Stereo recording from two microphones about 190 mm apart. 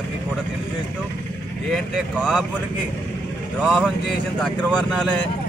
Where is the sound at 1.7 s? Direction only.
5° left (ahead or behind).